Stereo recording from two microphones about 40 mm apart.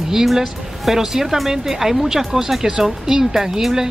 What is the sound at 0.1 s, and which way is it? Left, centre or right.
Speech, centre.